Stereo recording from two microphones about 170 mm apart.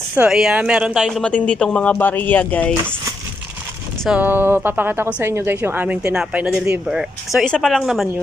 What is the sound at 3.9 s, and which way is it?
A woman's voice, 5° right (ahead or behind).